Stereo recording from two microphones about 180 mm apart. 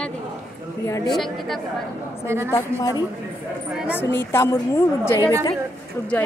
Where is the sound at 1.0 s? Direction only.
Centre (ahead or behind).